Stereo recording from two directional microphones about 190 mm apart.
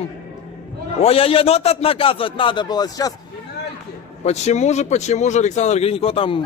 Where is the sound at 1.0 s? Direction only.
30° left (ahead or behind).